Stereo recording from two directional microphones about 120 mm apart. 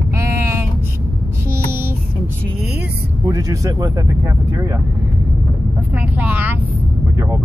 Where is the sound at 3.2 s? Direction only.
30° right (ahead or behind).